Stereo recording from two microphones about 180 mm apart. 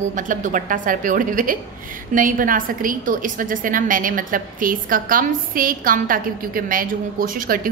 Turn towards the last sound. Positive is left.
turn(degrees=-50)  # may be behind; listen again after turning